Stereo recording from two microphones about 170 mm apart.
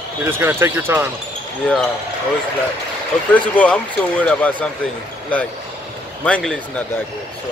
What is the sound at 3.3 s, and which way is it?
Speech, 10° left (ahead or behind).